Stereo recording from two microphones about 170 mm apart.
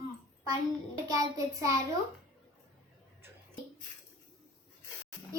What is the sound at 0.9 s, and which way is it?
Speech, 20° right (ahead or behind).